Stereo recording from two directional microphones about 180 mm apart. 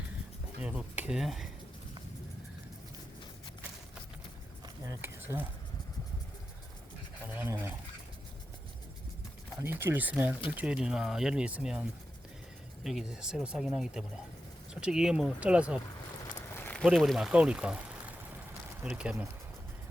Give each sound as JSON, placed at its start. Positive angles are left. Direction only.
{"t": 0.6, "sound": "speech", "side_deg": -5}
{"t": 4.6, "sound": "a sound", "side_deg": -15}
{"t": 7.3, "sound": "speech", "side_deg": -10}
{"t": 9.6, "sound": "speech", "side_deg": -10}
{"t": 16.6, "sound": "a sound", "side_deg": 10}
{"t": 16.8, "sound": "speech", "side_deg": 0}
{"t": 18.8, "sound": "speech", "side_deg": -5}